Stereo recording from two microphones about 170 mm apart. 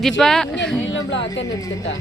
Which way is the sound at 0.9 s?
90° left.